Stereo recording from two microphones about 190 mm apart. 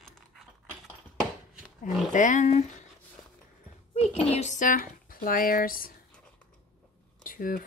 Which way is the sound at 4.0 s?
30° left (ahead or behind).